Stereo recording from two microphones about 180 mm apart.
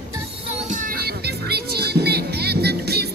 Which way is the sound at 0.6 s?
50° right (ahead or behind).